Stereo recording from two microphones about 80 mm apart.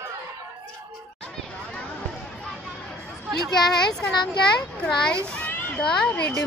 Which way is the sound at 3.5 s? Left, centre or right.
Centre.